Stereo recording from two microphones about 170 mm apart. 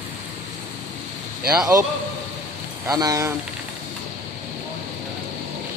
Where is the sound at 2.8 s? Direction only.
20° right (ahead or behind).